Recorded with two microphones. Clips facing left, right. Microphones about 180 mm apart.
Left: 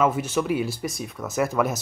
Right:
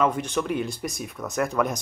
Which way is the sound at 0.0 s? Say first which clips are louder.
Left 2 dB; 5° left (ahead or behind).